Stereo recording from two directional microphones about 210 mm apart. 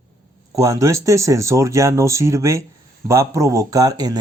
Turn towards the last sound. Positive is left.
turn(degrees=-20)  # may be behind; listen again after turning